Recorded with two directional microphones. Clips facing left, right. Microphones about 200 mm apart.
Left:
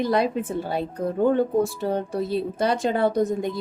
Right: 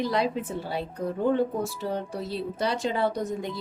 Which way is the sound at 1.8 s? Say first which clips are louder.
Left 6 dB; 50° left (ahead or behind).